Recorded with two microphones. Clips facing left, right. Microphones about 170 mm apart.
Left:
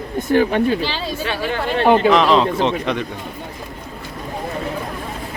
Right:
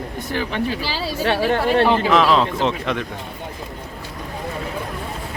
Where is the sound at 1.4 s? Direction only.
40° right (ahead or behind).